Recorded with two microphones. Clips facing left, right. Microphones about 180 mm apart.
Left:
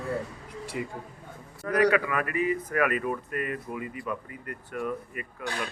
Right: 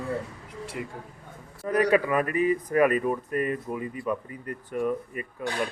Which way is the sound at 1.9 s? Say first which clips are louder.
Right 3 dB; 30° right (ahead or behind).